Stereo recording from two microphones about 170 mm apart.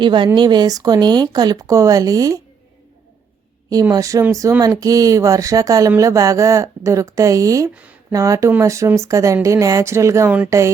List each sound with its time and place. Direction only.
0.0 s speech: 25° right (ahead or behind)
3.7 s speech: 20° right (ahead or behind)